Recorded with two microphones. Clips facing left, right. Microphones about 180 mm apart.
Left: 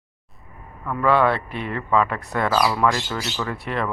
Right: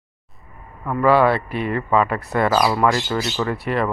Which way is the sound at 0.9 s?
5° right (ahead or behind).